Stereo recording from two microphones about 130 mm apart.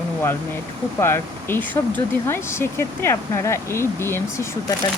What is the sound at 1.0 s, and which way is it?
Speech, 20° left (ahead or behind).